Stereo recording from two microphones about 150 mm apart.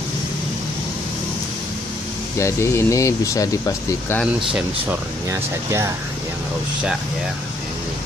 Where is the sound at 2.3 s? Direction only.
20° left (ahead or behind).